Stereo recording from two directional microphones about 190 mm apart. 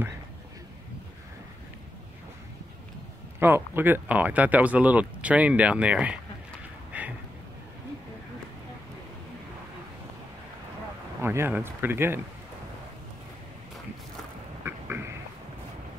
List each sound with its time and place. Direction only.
3.3 s speech: 10° right (ahead or behind)
6.9 s a sound: 5° right (ahead or behind)
11.1 s speech: 10° right (ahead or behind)
14.6 s duck: 10° right (ahead or behind)